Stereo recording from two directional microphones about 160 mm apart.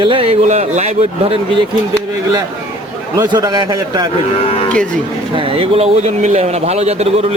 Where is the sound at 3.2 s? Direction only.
25° right (ahead or behind).